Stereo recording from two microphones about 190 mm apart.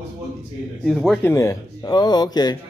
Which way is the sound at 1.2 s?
15° left (ahead or behind).